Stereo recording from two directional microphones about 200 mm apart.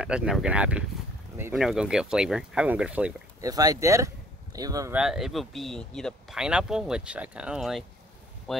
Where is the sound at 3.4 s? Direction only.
20° right (ahead or behind).